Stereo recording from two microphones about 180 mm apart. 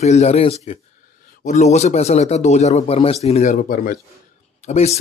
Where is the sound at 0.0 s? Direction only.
40° left (ahead or behind).